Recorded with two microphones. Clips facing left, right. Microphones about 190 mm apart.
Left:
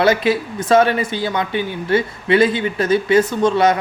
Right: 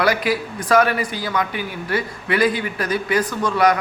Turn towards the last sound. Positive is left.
turn(degrees=25)  # may be behind; listen again after turning